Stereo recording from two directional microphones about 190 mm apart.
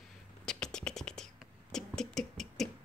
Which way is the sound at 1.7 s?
Centre (ahead or behind).